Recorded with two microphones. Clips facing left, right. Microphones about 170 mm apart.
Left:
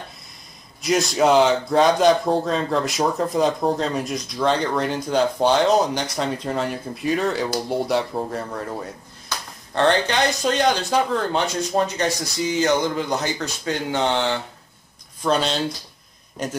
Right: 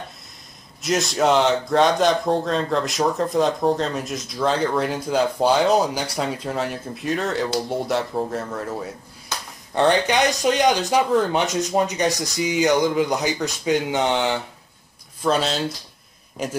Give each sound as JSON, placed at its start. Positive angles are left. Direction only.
{"t": 0.8, "sound": "speech", "side_deg": 0}
{"t": 9.8, "sound": "speech", "side_deg": -15}
{"t": 15.2, "sound": "speech", "side_deg": -5}